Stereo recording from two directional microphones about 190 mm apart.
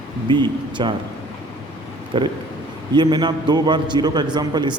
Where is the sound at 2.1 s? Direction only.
25° right (ahead or behind).